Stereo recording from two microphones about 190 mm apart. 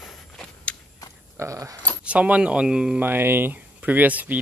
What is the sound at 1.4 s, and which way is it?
Speech, 15° right (ahead or behind).